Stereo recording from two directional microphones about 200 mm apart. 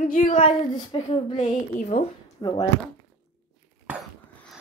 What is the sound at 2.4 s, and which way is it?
Speech, 25° left (ahead or behind).